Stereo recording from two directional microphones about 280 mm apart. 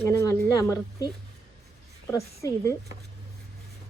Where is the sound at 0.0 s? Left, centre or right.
Centre.